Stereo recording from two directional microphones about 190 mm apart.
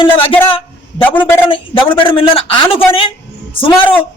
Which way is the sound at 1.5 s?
25° left (ahead or behind).